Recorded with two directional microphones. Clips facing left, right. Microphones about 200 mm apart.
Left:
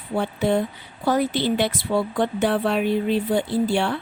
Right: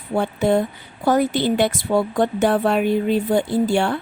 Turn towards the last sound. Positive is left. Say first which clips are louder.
# right 3 dB
turn(degrees=-50)  # may be behind; listen again after turning